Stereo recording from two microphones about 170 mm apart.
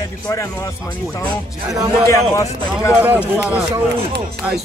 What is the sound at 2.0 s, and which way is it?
Speech, 20° left (ahead or behind).